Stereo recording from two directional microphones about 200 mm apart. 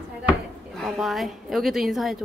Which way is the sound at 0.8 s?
Centre (ahead or behind).